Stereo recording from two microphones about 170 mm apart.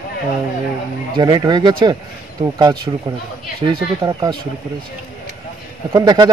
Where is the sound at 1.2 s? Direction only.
25° right (ahead or behind).